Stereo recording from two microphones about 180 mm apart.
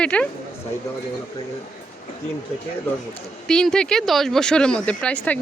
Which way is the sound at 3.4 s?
5° left (ahead or behind).